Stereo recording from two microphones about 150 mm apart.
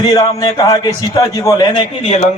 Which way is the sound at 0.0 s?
25° left (ahead or behind).